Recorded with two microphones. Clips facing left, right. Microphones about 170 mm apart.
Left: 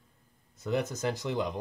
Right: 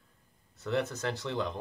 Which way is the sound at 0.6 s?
15° left (ahead or behind).